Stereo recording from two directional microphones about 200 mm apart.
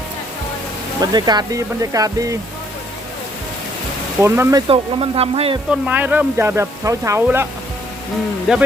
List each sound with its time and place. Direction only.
1.0 s speech: 20° right (ahead or behind)
4.2 s speech: 15° right (ahead or behind)
4.7 s speech: 30° right (ahead or behind)
5.8 s speech: 10° right (ahead or behind)
8.5 s speech: centre (ahead or behind)